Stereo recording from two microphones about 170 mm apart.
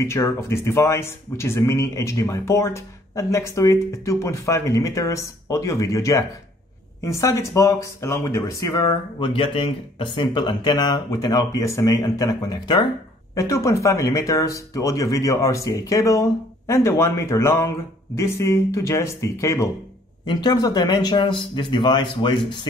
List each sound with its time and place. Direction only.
0.0 s speech: 15° left (ahead or behind)